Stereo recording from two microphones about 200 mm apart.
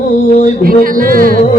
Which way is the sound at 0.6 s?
45° right (ahead or behind).